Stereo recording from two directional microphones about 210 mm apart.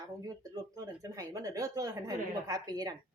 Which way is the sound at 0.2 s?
15° right (ahead or behind).